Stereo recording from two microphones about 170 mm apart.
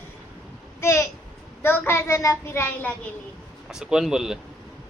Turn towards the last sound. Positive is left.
turn(degrees=-5)  # may be behind; listen again after turning